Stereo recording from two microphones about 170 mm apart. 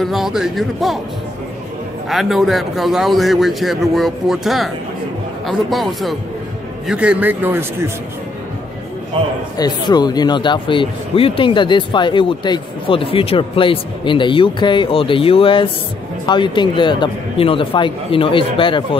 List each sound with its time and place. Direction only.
0.0 s a man's voice: centre (ahead or behind)
2.0 s a man's voice: centre (ahead or behind)
9.6 s speech: 25° left (ahead or behind)